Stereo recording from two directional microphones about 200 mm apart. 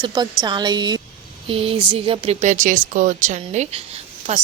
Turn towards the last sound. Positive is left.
turn(degrees=-35)  # may be behind; listen again after turning